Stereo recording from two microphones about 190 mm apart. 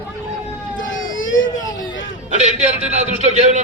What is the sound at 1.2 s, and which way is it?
Baby cry, 90° left.